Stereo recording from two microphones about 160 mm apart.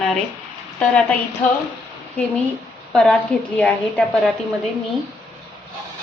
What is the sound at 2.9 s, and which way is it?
A woman's voice, 5° left (ahead or behind).